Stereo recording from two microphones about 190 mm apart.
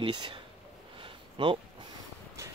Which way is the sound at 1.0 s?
25° right (ahead or behind).